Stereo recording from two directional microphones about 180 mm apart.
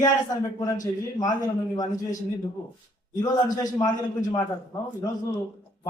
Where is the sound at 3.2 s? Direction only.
20° left (ahead or behind).